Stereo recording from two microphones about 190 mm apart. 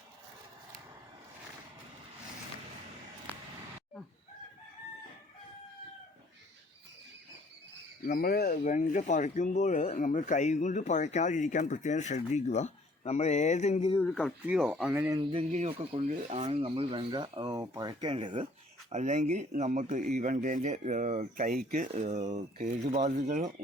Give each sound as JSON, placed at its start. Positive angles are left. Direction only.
{"t": 8.0, "sound": "speech", "side_deg": 50}
{"t": 14.0, "sound": "speech", "side_deg": 0}
{"t": 15.1, "sound": "speech", "side_deg": -25}
{"t": 18.9, "sound": "speech", "side_deg": -40}